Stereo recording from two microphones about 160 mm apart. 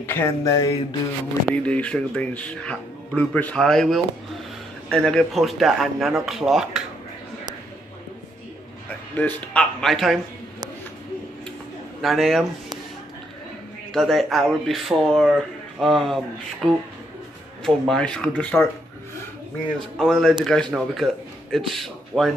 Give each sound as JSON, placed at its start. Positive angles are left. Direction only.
{"t": 0.0, "sound": "a sound", "side_deg": 15}
{"t": 1.5, "sound": "speech", "side_deg": 5}
{"t": 8.8, "sound": "a man's voice", "side_deg": 10}
{"t": 12.0, "sound": "speech", "side_deg": 0}
{"t": 13.9, "sound": "speech", "side_deg": 0}
{"t": 20.0, "sound": "speech", "side_deg": 5}